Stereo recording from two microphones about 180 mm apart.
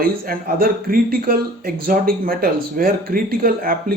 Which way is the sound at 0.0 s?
55° right (ahead or behind).